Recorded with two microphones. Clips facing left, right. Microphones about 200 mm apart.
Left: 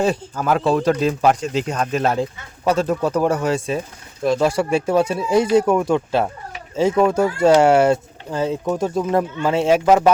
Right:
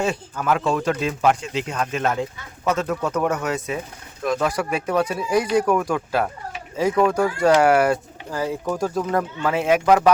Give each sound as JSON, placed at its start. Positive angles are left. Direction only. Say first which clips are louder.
{"t": 0.0, "sound": "speech", "louder": "left 4 dB", "side_deg": 35}